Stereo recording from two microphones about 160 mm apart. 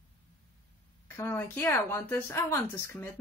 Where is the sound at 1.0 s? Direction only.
15° left (ahead or behind).